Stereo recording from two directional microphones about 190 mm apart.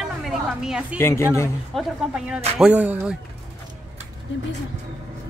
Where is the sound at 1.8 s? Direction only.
5° right (ahead or behind).